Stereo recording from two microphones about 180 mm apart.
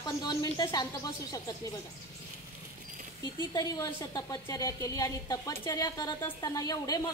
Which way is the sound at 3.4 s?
20° left (ahead or behind).